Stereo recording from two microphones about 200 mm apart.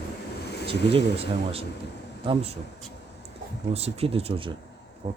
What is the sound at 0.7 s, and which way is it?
Speech, 30° right (ahead or behind).